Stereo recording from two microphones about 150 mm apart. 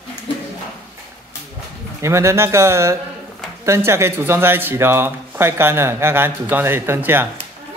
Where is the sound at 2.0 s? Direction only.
20° right (ahead or behind).